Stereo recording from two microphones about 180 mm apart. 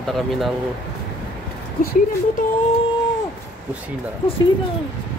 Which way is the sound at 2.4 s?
45° left (ahead or behind).